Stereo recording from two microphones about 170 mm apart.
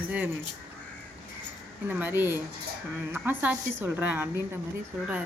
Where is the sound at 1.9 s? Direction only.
10° right (ahead or behind).